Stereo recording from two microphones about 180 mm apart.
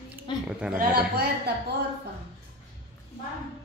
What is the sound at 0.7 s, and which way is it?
Speech, 60° right (ahead or behind).